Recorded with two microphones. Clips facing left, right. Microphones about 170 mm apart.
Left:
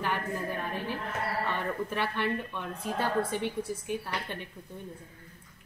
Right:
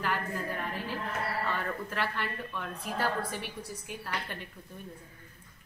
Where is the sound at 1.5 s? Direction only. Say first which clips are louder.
Left 2 dB; 20° left (ahead or behind).